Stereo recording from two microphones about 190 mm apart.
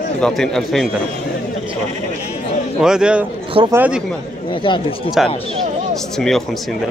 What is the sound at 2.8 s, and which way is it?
A man's voice, 5° right (ahead or behind).